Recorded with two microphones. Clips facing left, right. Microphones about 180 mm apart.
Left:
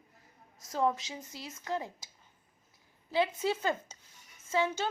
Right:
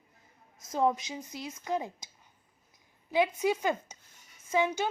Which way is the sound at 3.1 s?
15° right (ahead or behind).